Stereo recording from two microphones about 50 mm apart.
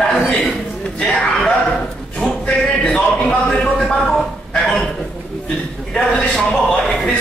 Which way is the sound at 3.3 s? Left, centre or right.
Centre.